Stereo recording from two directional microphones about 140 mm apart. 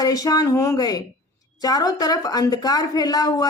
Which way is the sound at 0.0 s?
25° left (ahead or behind).